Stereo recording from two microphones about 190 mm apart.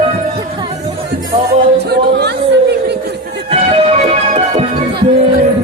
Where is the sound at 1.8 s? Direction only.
60° right (ahead or behind).